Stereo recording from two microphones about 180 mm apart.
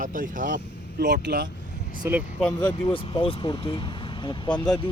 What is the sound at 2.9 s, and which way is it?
Speech, 30° left (ahead or behind).